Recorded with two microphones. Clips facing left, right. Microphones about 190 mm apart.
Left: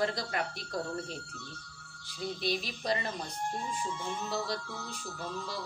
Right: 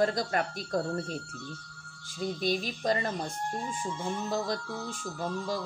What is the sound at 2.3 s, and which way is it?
Speech, 45° right (ahead or behind).